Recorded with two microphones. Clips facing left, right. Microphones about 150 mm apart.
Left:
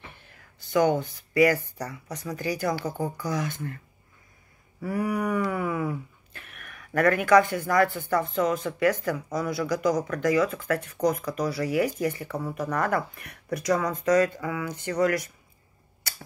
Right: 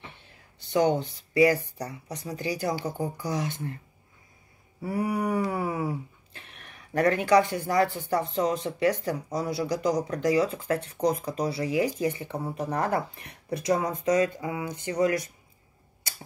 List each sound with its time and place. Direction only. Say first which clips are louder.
0.3 s speech: left 1 dB; 25° right (ahead or behind)
4.8 s speech: left 1 dB; 30° right (ahead or behind)